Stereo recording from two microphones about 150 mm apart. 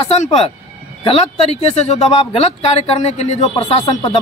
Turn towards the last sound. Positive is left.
turn(degrees=30)  # may be behind; listen again after turning